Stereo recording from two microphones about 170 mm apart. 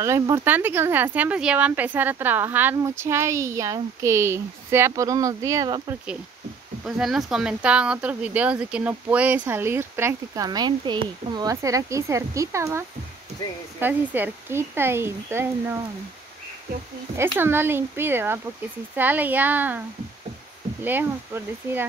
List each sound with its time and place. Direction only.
0.0 s speech: 15° right (ahead or behind)
6.8 s speech: centre (ahead or behind)
17.4 s speech: 15° right (ahead or behind)
20.8 s speech: 10° right (ahead or behind)